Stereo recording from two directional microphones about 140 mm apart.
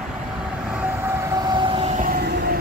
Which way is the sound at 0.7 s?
10° right (ahead or behind).